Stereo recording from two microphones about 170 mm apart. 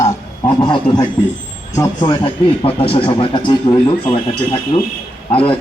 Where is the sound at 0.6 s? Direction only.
25° left (ahead or behind).